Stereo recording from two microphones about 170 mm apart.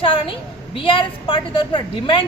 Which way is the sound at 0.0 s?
30° left (ahead or behind).